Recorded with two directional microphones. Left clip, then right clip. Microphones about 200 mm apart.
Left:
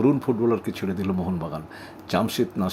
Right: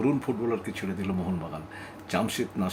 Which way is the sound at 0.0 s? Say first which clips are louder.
Left 6 dB; 15° left (ahead or behind).